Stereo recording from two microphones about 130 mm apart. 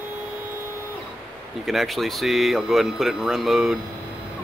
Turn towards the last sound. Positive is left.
turn(degrees=0)  # may be behind; listen again after turning